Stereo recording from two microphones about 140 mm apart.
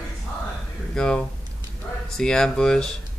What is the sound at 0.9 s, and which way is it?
Speech, 5° left (ahead or behind).